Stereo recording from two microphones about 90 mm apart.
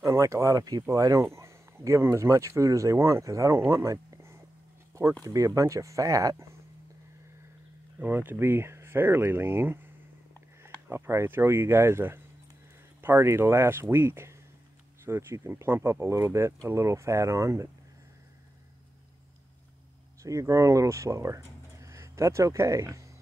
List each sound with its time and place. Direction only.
0.0 s speech: 35° right (ahead or behind)
8.0 s speech: 20° right (ahead or behind)
10.9 s speech: 25° right (ahead or behind)
20.2 s speech: 35° right (ahead or behind)